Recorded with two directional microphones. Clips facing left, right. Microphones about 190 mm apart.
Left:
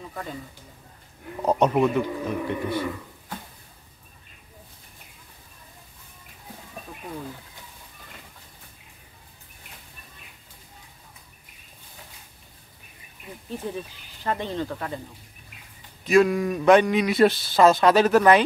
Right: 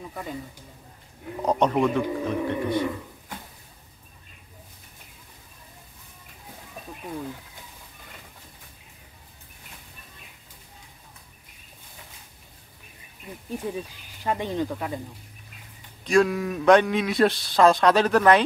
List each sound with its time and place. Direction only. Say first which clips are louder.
0.1 s speech: even; 10° right (ahead or behind)
1.4 s speech: left 1 dB; 10° left (ahead or behind)
13.5 s speech: right 1 dB; 10° right (ahead or behind)
16.0 s speech: left 2 dB; 5° left (ahead or behind)